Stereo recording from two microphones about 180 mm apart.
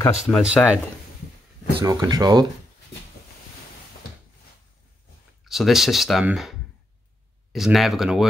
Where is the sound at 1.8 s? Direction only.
20° right (ahead or behind).